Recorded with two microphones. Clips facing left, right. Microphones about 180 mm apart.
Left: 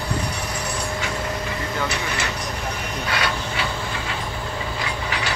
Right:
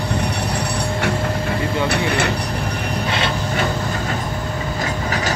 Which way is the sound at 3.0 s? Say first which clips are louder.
Right 2 dB; 25° right (ahead or behind).